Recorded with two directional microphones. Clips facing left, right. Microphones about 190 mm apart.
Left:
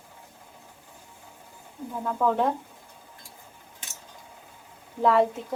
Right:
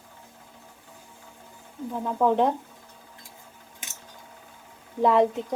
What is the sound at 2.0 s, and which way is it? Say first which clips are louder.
Speech: right 2 dB; 20° right (ahead or behind).